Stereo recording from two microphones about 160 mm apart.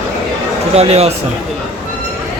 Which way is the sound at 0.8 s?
40° right (ahead or behind).